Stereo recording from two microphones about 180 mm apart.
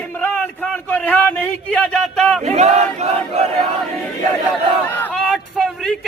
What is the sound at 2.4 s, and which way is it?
Battle cry, 40° right (ahead or behind).